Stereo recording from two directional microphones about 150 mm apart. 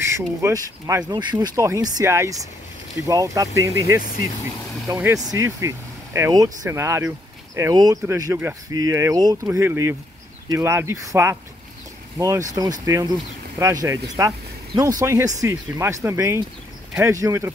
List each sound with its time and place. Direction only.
0.1 s speech: 20° right (ahead or behind)